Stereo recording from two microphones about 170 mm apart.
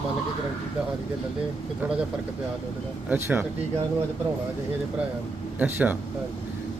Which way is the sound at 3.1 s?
15° right (ahead or behind).